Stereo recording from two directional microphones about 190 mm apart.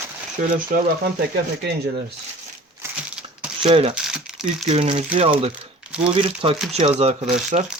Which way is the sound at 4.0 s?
5° right (ahead or behind).